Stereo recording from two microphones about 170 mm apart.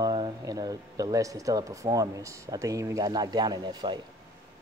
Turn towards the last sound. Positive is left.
turn(degrees=-25)  # may be behind; listen again after turning